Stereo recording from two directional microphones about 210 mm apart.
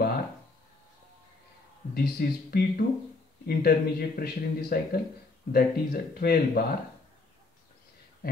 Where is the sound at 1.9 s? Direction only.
45° left (ahead or behind).